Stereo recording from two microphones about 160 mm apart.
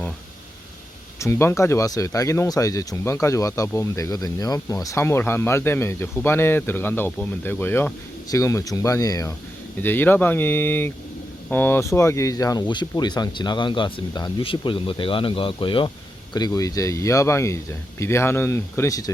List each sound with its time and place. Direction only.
1.2 s speech: 15° left (ahead or behind)